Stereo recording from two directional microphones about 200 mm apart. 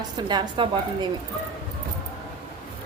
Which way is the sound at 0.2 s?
20° right (ahead or behind).